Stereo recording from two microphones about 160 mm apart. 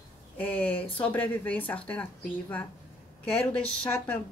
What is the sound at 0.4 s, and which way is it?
A woman's voice, 10° left (ahead or behind).